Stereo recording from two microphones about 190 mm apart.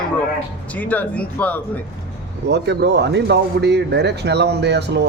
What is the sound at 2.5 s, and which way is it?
Speech, 65° right (ahead or behind).